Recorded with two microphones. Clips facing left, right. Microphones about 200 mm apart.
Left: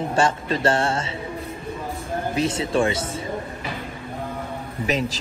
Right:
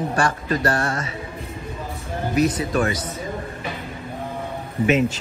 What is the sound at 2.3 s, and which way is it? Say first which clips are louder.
Speech: right 3 dB; 25° left (ahead or behind).